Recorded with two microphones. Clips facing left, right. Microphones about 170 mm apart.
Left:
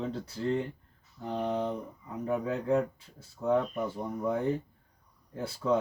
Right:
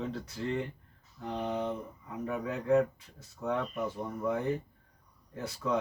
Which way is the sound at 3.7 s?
Centre (ahead or behind).